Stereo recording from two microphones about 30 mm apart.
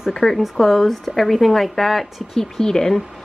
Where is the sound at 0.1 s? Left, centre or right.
Centre.